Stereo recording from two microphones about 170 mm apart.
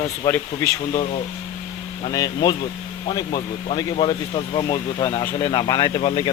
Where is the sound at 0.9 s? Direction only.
40° left (ahead or behind).